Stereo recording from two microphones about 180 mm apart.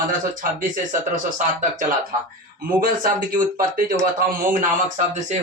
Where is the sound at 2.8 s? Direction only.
50° right (ahead or behind).